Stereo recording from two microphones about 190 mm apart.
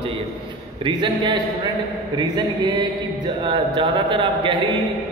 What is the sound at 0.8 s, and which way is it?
A man's voice, 25° right (ahead or behind).